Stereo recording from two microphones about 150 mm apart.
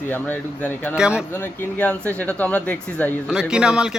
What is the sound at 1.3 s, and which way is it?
Speech, 15° left (ahead or behind).